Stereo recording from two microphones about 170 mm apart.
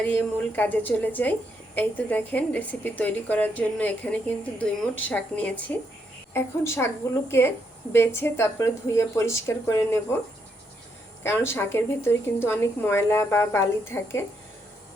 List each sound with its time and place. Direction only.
0.0 s a woman's voice: 10° left (ahead or behind)
11.2 s a woman's voice: 15° left (ahead or behind)